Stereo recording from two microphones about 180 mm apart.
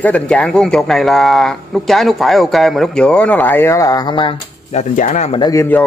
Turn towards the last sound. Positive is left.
turn(degrees=15)  # may be behind; listen again after turning